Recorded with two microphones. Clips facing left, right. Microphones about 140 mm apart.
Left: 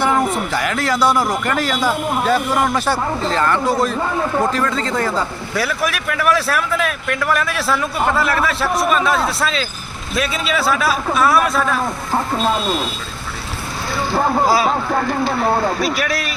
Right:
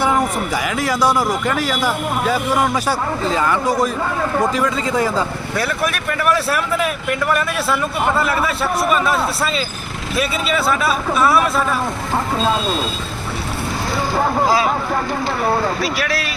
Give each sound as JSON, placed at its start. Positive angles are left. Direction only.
{"t": 0.5, "sound": "a man's voice", "side_deg": -5}
{"t": 5.5, "sound": "speech", "side_deg": 5}
{"t": 14.4, "sound": "speech", "side_deg": 10}
{"t": 15.8, "sound": "speech", "side_deg": 15}